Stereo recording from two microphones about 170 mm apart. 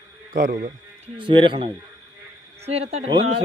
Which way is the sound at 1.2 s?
30° right (ahead or behind).